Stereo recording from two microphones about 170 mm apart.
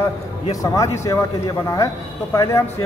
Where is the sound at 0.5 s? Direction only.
20° left (ahead or behind).